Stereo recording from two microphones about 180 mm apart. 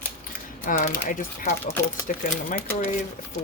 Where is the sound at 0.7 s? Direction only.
45° left (ahead or behind).